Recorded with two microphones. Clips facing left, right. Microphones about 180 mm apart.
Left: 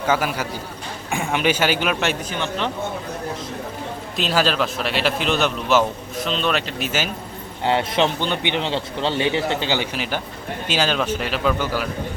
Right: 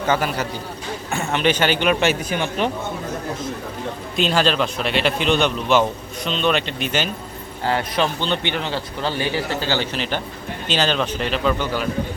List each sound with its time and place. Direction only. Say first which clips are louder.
0.1 s speech: even; 5° left (ahead or behind)
2.3 s speech: right 3 dB; 15° right (ahead or behind)
4.2 s a man's voice: right 1 dB; 5° left (ahead or behind)
7.6 s a man's voice: left 2 dB; 25° left (ahead or behind)
8.2 s a man's voice: even; 15° left (ahead or behind)